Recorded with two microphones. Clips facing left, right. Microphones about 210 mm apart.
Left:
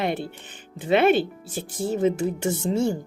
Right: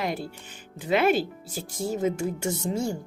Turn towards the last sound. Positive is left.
turn(degrees=30)  # may be behind; listen again after turning